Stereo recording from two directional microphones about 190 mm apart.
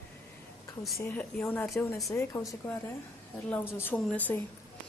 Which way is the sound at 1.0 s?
10° left (ahead or behind).